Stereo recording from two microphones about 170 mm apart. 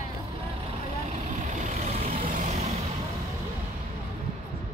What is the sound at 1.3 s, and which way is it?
Vehicle, 45° right (ahead or behind).